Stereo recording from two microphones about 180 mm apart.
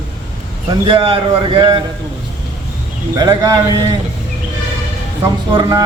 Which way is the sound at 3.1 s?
25° right (ahead or behind).